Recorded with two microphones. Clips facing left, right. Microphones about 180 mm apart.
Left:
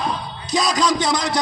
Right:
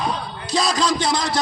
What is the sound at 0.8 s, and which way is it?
Music, 25° right (ahead or behind).